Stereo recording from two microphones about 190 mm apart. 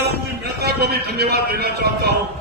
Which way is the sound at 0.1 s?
60° right (ahead or behind).